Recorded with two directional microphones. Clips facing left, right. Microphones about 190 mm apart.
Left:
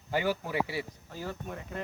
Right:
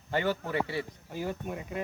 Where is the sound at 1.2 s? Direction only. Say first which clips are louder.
Right 4 dB; 15° right (ahead or behind).